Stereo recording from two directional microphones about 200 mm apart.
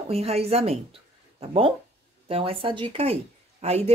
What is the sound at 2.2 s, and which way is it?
Speech, 30° right (ahead or behind).